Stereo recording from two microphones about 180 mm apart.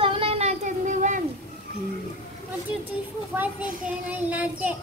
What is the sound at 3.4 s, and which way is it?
A child's voice, 10° right (ahead or behind).